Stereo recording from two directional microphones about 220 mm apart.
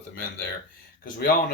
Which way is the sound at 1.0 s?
40° left (ahead or behind).